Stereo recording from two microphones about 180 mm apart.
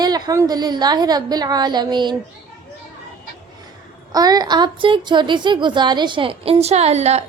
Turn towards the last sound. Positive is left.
turn(degrees=-35)  # may be behind; listen again after turning